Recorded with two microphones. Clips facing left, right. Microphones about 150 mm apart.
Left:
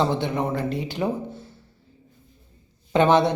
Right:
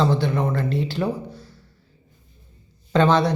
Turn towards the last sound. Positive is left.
turn(degrees=20)  # may be behind; listen again after turning